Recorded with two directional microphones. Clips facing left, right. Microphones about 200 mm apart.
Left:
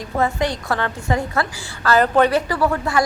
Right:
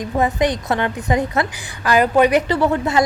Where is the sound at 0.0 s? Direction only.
20° right (ahead or behind).